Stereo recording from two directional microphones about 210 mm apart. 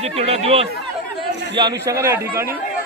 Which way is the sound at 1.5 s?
15° right (ahead or behind).